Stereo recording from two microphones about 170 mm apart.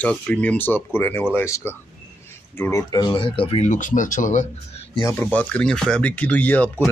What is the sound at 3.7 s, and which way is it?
Speech, 50° left (ahead or behind).